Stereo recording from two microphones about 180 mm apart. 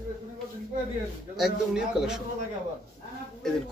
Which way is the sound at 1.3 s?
Centre (ahead or behind).